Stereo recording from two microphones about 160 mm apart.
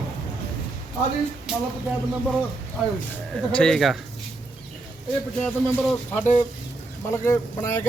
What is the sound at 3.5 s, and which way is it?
Speech, 5° left (ahead or behind).